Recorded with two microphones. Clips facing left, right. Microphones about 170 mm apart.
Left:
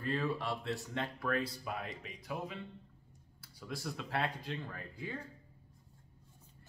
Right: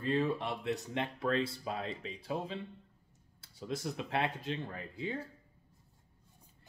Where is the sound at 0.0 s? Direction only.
20° right (ahead or behind).